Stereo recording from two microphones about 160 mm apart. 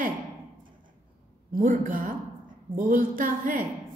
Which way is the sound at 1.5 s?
60° right (ahead or behind).